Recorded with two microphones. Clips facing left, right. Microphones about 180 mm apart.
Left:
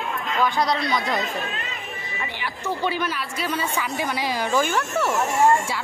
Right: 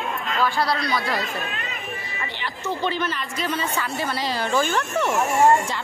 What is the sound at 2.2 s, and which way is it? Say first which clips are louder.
Speech: left 2 dB; 10° left (ahead or behind).